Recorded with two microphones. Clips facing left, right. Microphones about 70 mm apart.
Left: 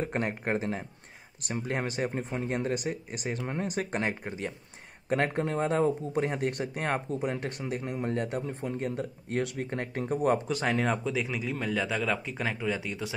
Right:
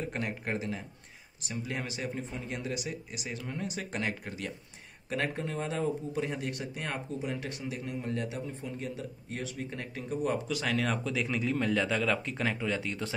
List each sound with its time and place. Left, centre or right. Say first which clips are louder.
0.0 s speech: left 4 dB; left
1.4 s speech: left 5 dB; left
5.1 s speech: left 5 dB; left
8.4 s speech: left 5 dB; left
9.7 s speech: left 6 dB; left; by 11.3 s centre
11.3 s speech: right 2 dB; centre